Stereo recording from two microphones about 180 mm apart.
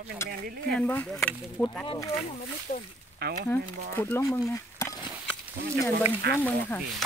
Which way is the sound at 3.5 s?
10° left (ahead or behind).